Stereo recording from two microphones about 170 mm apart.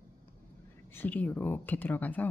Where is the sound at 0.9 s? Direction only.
10° left (ahead or behind).